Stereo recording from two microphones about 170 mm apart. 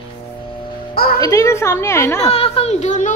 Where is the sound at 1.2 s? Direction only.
20° left (ahead or behind).